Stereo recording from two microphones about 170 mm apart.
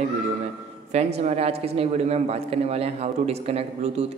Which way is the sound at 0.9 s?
40° right (ahead or behind).